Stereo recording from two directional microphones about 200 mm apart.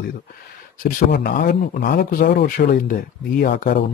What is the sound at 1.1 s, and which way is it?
A man's voice, 50° left (ahead or behind).